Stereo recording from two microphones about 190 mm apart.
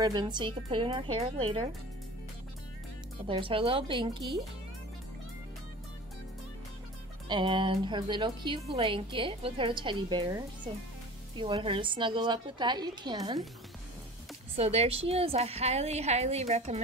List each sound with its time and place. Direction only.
0.0 s a woman's voice: 20° right (ahead or behind)
3.3 s a woman's voice: 25° right (ahead or behind)
7.2 s a woman's voice: 25° right (ahead or behind)
14.5 s a woman's voice: 35° right (ahead or behind)